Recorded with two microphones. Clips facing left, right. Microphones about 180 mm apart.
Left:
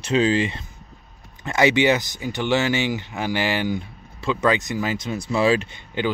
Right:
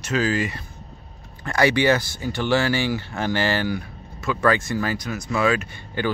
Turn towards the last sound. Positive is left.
turn(degrees=30)  # may be behind; listen again after turning